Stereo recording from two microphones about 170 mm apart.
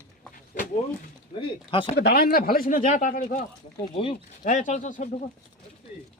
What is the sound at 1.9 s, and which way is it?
Speech, 70° left (ahead or behind).